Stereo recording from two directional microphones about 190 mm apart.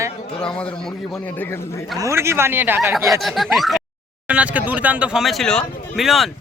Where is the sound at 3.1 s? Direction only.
Centre (ahead or behind).